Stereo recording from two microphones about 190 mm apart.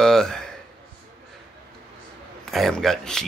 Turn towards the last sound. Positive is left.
turn(degrees=0)  # may be behind; listen again after turning